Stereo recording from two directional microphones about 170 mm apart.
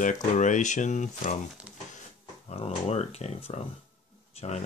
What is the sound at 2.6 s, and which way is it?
Speech, 40° left (ahead or behind).